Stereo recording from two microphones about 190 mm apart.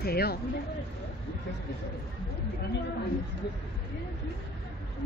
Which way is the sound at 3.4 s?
60° left (ahead or behind).